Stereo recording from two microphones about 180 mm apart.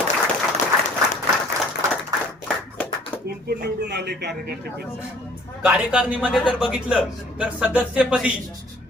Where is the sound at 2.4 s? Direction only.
10° left (ahead or behind).